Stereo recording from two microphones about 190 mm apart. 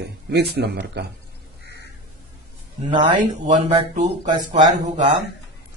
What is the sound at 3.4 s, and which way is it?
Speech, 40° right (ahead or behind).